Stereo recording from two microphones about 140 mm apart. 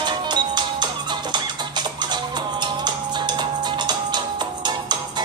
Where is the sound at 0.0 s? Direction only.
30° right (ahead or behind).